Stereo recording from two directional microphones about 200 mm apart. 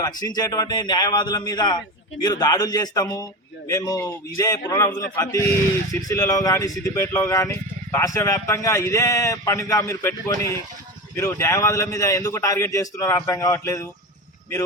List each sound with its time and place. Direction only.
0.0 s a man's voice: 20° left (ahead or behind)